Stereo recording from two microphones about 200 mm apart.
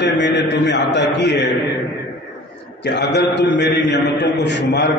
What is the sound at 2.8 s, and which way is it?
A man's voice, 60° left (ahead or behind).